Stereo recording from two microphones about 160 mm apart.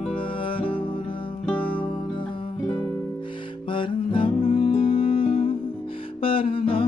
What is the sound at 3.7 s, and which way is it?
Music, 30° left (ahead or behind).